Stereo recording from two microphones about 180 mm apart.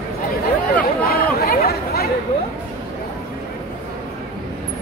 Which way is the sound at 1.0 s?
60° left (ahead or behind).